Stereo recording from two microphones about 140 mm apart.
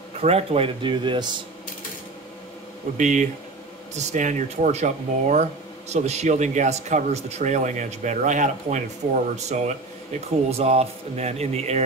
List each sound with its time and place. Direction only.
0.2 s speech: 45° right (ahead or behind)
3.0 s speech: 60° right (ahead or behind)